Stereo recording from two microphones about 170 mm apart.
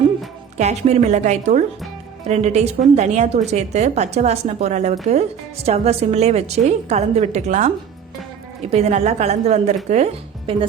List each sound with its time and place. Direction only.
0.5 s a woman's voice: 40° right (ahead or behind)